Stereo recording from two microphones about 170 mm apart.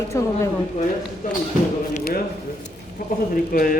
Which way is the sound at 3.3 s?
55° left (ahead or behind).